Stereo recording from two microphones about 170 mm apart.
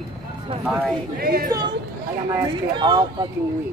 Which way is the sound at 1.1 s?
60° right (ahead or behind).